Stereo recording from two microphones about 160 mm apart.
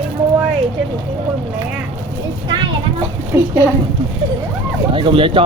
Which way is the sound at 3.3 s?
20° right (ahead or behind).